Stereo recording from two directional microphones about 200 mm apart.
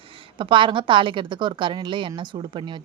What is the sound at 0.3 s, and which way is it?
A woman's voice, 25° right (ahead or behind).